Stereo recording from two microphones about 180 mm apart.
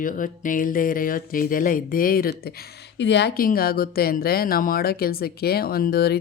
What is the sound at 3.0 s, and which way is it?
Speech, 70° left (ahead or behind).